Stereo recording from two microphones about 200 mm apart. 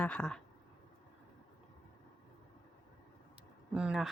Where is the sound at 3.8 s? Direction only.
Centre (ahead or behind).